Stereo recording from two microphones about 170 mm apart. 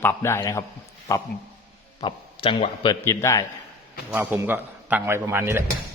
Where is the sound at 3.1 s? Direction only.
15° left (ahead or behind).